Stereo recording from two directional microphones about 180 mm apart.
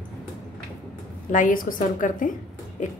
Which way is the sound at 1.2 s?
45° left (ahead or behind).